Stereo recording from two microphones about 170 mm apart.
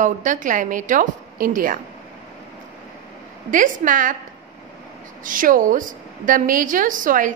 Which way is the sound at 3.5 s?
50° right (ahead or behind).